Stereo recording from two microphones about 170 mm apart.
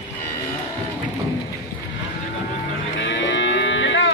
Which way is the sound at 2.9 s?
90° left.